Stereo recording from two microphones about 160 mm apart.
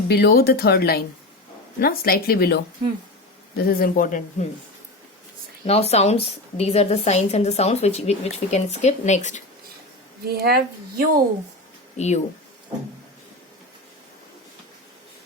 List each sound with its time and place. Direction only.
0.1 s speech: 75° left (ahead or behind)
3.6 s speech: 65° left (ahead or behind)
5.6 s a woman's voice: 40° left (ahead or behind)
10.2 s a woman's voice: 80° right
11.9 s speech: 45° left (ahead or behind)